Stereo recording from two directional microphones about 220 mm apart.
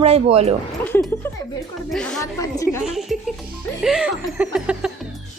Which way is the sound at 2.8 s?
Centre (ahead or behind).